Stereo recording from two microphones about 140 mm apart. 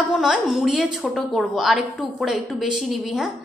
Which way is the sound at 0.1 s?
Centre (ahead or behind).